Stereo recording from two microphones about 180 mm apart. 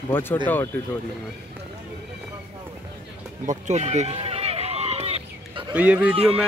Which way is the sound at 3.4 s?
40° right (ahead or behind).